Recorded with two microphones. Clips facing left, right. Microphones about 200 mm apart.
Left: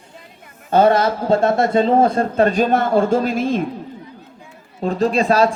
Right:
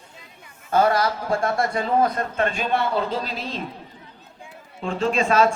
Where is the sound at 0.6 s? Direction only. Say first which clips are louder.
Left 6 dB; 25° left (ahead or behind); by 3.6 s 50° left (ahead or behind).